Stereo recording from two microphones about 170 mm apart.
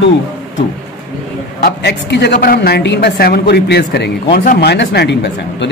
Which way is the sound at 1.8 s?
80° left.